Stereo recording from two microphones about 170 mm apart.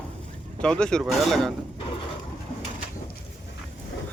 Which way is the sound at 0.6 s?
5° left (ahead or behind).